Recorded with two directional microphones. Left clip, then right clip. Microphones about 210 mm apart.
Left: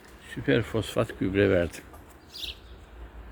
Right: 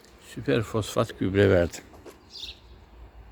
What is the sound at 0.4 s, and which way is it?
Speech, 25° right (ahead or behind).